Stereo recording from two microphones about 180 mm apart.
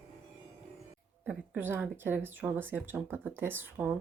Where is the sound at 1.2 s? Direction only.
10° right (ahead or behind).